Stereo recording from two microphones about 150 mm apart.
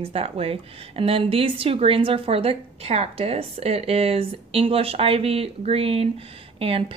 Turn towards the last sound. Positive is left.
turn(degrees=-40)  # may be behind; listen again after turning